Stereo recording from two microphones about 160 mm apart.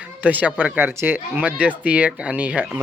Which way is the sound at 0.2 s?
10° right (ahead or behind).